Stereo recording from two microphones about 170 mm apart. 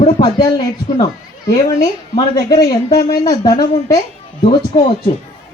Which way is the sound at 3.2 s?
25° left (ahead or behind).